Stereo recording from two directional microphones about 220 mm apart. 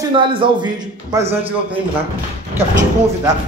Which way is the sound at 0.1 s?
20° right (ahead or behind).